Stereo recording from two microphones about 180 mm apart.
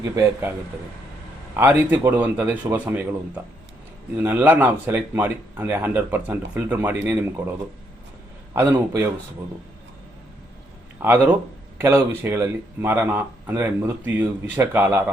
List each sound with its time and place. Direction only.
0.0 s speech: 15° right (ahead or behind)
1.5 s speech: 10° right (ahead or behind)
4.2 s speech: 10° right (ahead or behind)
8.5 s speech: 15° right (ahead or behind)
11.0 s speech: 10° right (ahead or behind)